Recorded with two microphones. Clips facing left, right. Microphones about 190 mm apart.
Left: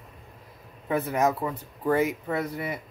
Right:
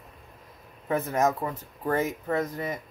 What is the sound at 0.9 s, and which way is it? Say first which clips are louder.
Speech: even; 10° left (ahead or behind).